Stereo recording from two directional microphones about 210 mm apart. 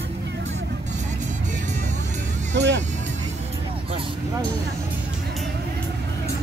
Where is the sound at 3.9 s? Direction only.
25° right (ahead or behind).